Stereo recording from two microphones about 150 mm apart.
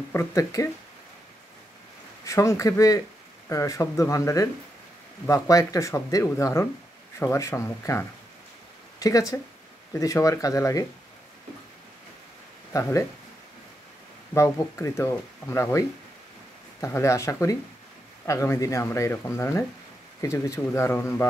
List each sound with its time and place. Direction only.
0.1 s speech: 15° left (ahead or behind)
2.2 s speech: 20° left (ahead or behind)
12.7 s speech: 20° left (ahead or behind)
14.3 s speech: 20° left (ahead or behind)
16.8 s speech: 20° left (ahead or behind)